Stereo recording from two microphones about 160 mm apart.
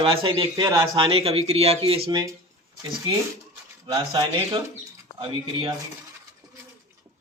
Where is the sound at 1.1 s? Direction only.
35° right (ahead or behind); by 4.6 s 20° right (ahead or behind).